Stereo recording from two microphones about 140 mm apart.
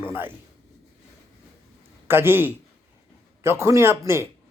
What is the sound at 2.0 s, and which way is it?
A man's voice, 15° right (ahead or behind).